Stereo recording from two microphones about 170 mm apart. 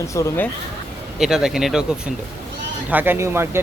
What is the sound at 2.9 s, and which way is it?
Speech, 10° right (ahead or behind).